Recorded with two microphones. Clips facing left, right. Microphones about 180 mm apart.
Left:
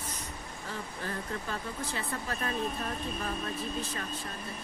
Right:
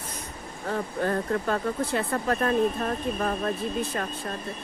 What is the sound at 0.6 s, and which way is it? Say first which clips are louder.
Speech: right 12 dB; 60° right (ahead or behind).